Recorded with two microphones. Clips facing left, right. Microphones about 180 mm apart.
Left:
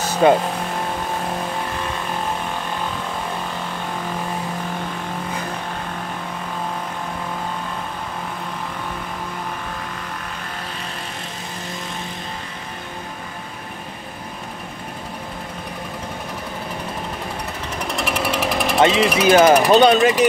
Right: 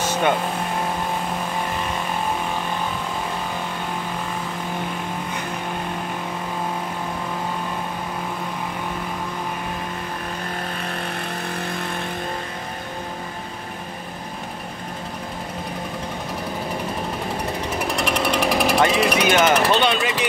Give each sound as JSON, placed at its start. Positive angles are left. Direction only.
{"t": 0.2, "sound": "speech", "side_deg": 30}
{"t": 17.7, "sound": "jackhammer", "side_deg": 0}
{"t": 18.9, "sound": "a sound", "side_deg": 0}
{"t": 19.2, "sound": "jackhammer", "side_deg": 35}
{"t": 19.7, "sound": "speech", "side_deg": 40}